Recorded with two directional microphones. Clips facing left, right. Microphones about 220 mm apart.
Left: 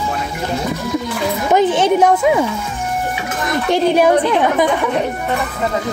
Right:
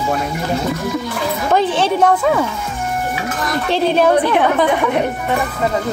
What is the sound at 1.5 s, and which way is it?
Speech, 15° left (ahead or behind).